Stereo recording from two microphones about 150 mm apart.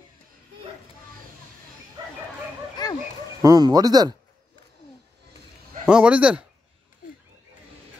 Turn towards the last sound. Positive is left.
turn(degrees=-10)  # may be behind; listen again after turning